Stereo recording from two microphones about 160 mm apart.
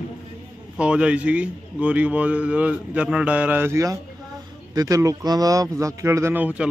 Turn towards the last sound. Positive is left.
turn(degrees=-10)  # may be behind; listen again after turning